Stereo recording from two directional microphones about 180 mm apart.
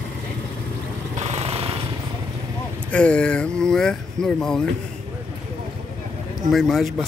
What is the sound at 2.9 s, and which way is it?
Speech, 5° left (ahead or behind).